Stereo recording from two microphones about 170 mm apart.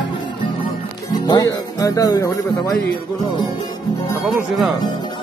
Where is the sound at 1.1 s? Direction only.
25° left (ahead or behind).